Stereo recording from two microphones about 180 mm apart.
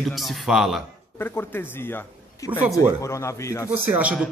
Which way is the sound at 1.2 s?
10° left (ahead or behind).